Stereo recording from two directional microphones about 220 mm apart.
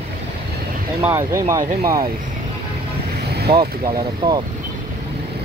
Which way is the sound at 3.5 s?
20° right (ahead or behind).